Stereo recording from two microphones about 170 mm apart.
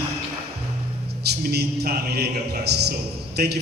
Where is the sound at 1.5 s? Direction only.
70° right (ahead or behind).